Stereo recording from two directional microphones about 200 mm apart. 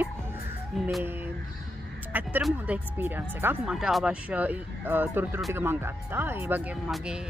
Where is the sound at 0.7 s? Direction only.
Centre (ahead or behind).